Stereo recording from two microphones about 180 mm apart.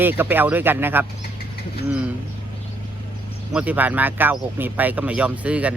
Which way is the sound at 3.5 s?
10° right (ahead or behind).